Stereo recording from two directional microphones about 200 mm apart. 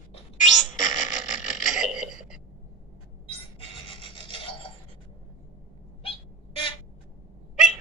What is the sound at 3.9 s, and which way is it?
Filing, 25° left (ahead or behind).